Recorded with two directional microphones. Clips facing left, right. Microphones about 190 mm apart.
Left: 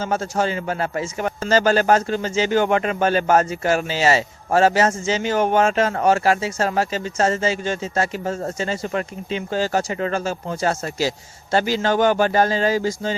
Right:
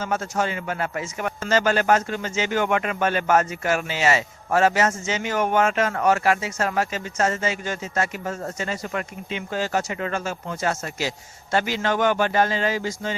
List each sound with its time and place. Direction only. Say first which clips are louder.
0.0 s a man's voice: left 3 dB; 30° left (ahead or behind)